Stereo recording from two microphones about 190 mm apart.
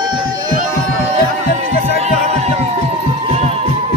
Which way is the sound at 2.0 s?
35° right (ahead or behind).